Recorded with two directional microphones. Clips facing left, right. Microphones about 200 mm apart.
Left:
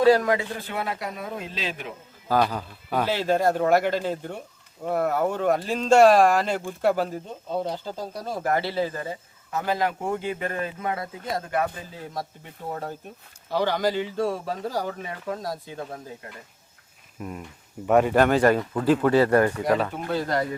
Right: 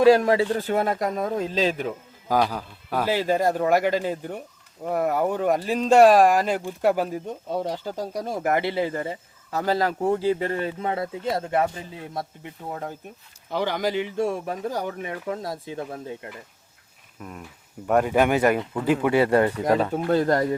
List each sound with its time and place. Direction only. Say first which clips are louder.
0.0 s speech: right 2 dB; 25° right (ahead or behind)
0.6 s speech: right 7 dB; 45° right (ahead or behind)
2.2 s speech: even; 10° right (ahead or behind); by 11.7 s 25° right (ahead or behind)
13.5 s speech: left 1 dB; 15° right (ahead or behind)
17.2 s speech: left 3 dB; centre (ahead or behind)
18.2 s speech: left 1 dB; 15° right (ahead or behind)
20.1 s speech: right 7 dB; 50° right (ahead or behind)